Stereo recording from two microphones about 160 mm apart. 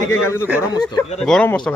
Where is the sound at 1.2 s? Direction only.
5° left (ahead or behind).